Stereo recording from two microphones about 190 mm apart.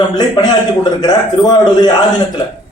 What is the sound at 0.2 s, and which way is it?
A man's voice, 20° left (ahead or behind).